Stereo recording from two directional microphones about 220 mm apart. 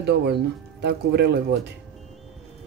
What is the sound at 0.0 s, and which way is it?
A woman's voice, 50° right (ahead or behind).